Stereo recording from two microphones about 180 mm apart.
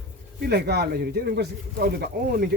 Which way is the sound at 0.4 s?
65° right (ahead or behind).